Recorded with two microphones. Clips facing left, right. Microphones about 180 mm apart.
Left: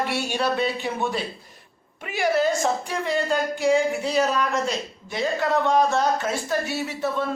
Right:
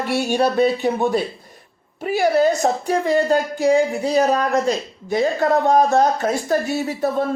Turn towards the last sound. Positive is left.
turn(degrees=-40)  # may be behind; listen again after turning